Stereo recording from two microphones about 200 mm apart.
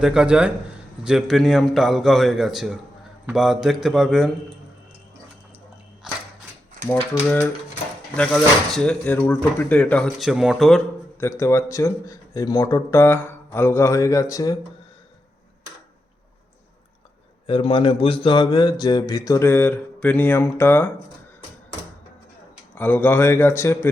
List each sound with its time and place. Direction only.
0.0 s speech: 5° right (ahead or behind)
6.0 s a sound: 5° right (ahead or behind)
8.1 s speech: 5° left (ahead or behind)
11.2 s speech: 15° left (ahead or behind)
17.4 s speech: 25° left (ahead or behind)
22.7 s speech: 10° left (ahead or behind)